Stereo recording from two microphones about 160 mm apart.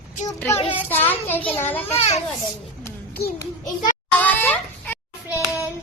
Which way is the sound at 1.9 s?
40° left (ahead or behind).